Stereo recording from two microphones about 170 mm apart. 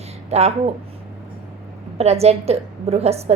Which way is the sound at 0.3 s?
40° right (ahead or behind).